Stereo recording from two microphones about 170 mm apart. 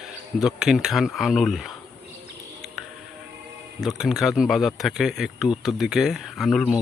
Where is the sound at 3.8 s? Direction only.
Centre (ahead or behind).